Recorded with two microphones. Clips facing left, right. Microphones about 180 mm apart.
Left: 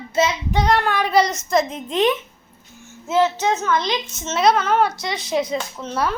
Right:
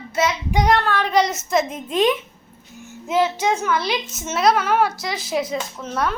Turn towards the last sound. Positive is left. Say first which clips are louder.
# left 1 dB
turn(degrees=0)  # may be behind; listen again after turning